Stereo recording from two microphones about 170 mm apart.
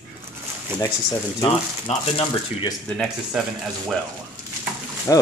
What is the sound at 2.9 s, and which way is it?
Speech, centre (ahead or behind).